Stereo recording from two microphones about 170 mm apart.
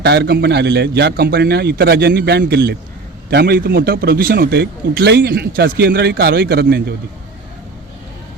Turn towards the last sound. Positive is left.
turn(degrees=-70)  # may be behind; listen again after turning